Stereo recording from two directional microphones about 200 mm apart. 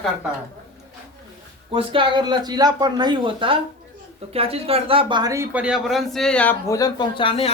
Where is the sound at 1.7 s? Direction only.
25° right (ahead or behind); by 6.8 s 5° left (ahead or behind).